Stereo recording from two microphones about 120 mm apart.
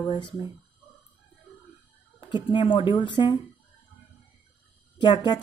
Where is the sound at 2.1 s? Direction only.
40° left (ahead or behind).